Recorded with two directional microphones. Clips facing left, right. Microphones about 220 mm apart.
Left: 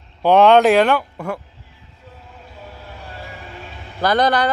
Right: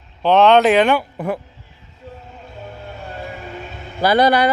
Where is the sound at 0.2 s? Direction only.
10° left (ahead or behind).